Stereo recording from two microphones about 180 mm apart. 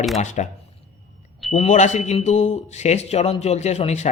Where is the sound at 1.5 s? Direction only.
40° left (ahead or behind).